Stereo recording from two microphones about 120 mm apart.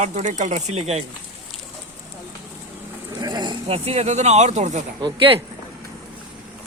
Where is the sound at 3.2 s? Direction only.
35° right (ahead or behind).